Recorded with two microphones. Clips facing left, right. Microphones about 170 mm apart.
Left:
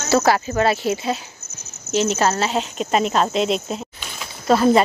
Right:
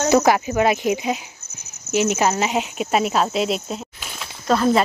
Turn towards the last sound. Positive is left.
turn(degrees=5)  # may be behind; listen again after turning